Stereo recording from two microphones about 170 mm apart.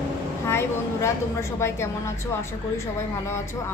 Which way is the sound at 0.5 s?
15° left (ahead or behind).